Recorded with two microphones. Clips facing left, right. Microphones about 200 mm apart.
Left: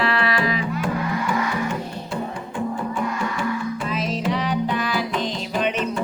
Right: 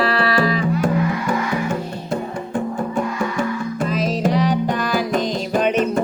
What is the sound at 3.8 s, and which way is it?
Music, 40° right (ahead or behind).